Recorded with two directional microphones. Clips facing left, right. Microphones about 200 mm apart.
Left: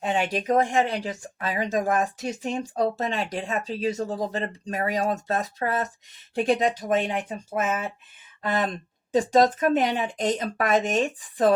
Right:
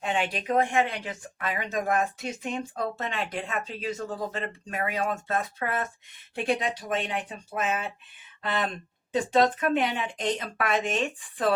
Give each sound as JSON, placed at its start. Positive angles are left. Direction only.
{"t": 0.0, "sound": "speech", "side_deg": 40}